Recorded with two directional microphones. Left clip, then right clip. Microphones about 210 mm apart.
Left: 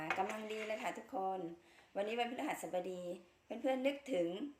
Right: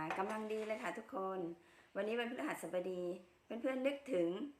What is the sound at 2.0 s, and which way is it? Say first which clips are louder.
Speech: left 1 dB; 15° right (ahead or behind).